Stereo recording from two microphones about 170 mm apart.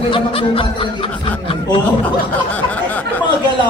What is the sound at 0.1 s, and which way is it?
Snicker, 30° left (ahead or behind).